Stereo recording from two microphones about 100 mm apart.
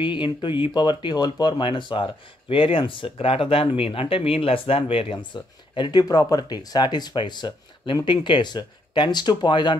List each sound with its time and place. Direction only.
0.0 s speech: 55° left (ahead or behind)